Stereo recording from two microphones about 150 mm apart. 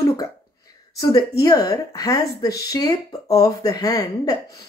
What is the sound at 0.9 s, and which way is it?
Speech, 20° left (ahead or behind).